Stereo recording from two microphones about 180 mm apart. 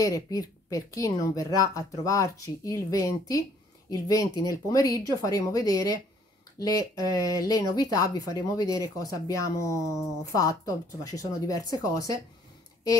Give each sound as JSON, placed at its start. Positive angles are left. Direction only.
{"t": 0.0, "sound": "speech", "side_deg": 20}